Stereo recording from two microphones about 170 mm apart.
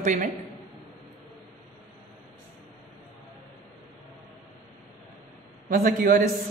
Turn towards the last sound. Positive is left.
turn(degrees=-50)  # may be behind; listen again after turning